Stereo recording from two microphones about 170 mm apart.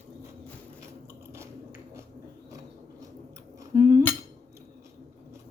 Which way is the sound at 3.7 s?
20° right (ahead or behind).